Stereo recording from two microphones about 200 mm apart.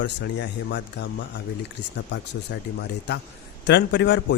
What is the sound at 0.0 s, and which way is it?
Speech, 60° left (ahead or behind).